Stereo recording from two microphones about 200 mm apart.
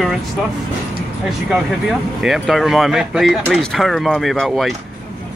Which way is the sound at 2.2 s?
Centre (ahead or behind).